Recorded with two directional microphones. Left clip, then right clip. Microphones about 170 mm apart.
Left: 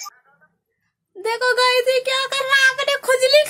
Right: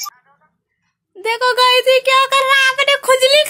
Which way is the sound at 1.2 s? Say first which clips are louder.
Right 4 dB; 10° right (ahead or behind).